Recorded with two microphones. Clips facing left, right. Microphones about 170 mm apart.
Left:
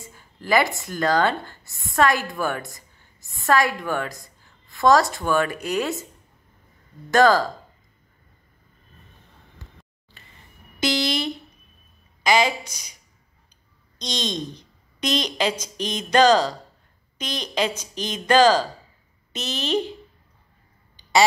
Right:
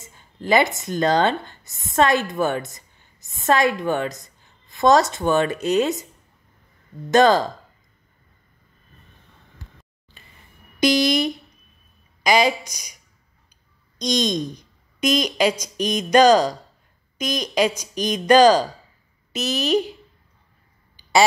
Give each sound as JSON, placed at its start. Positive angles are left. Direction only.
{"t": 0.0, "sound": "speech", "side_deg": -20}
{"t": 7.1, "sound": "speech", "side_deg": -20}
{"t": 10.8, "sound": "a sound", "side_deg": -15}
{"t": 12.2, "sound": "speech", "side_deg": -15}
{"t": 13.9, "sound": "a woman's voice", "side_deg": -15}